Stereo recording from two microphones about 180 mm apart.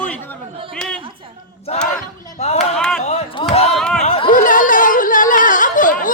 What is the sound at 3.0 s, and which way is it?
Speech, 40° left (ahead or behind).